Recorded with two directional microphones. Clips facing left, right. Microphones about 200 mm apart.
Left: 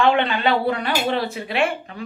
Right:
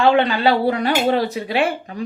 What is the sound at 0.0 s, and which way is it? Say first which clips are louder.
A woman's voice: right 3 dB; 35° right (ahead or behind).